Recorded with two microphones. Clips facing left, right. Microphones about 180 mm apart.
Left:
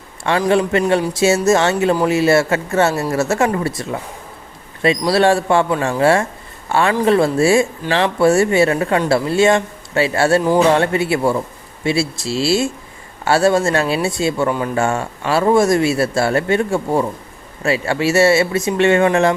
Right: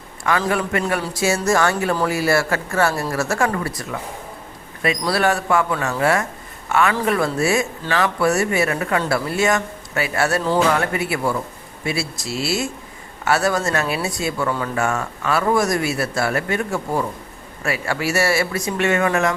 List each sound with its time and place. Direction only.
0.3 s a man's voice: 25° left (ahead or behind)